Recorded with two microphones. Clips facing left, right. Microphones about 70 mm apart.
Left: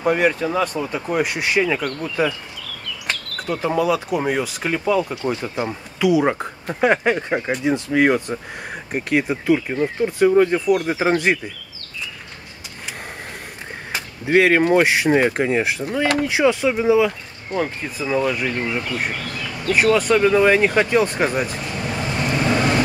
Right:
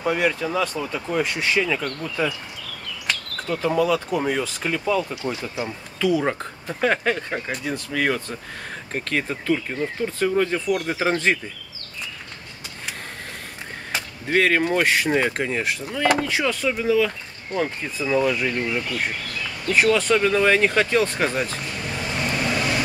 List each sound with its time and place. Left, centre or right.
0.0 s speech: left
3.4 s speech: centre
5.1 s speech: centre
5.4 s speech: left
13.9 s speech: centre
19.1 s speech: left
19.7 s speech: centre
22.5 s vehicle: left